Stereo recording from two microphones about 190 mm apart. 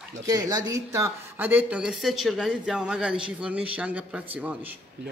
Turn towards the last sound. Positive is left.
turn(degrees=-5)  # may be behind; listen again after turning